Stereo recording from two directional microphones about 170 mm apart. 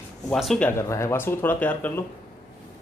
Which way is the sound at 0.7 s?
15° left (ahead or behind).